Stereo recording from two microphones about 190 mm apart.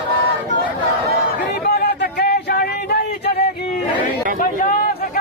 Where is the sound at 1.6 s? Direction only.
60° left (ahead or behind).